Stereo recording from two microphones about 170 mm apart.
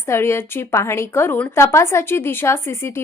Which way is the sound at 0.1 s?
15° left (ahead or behind).